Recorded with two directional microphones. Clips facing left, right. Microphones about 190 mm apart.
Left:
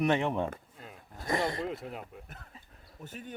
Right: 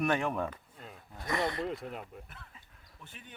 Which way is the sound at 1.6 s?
Centre (ahead or behind).